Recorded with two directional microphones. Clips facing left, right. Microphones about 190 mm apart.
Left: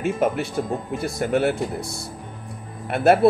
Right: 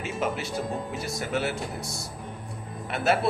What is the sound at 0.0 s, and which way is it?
Speech, 55° left (ahead or behind).